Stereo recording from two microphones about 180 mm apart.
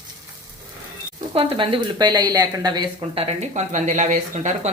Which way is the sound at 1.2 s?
30° right (ahead or behind).